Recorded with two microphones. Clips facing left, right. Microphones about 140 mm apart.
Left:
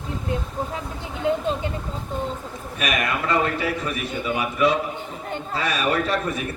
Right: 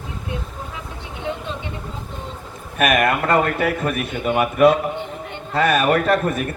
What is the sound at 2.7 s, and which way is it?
A man's voice, 55° right (ahead or behind).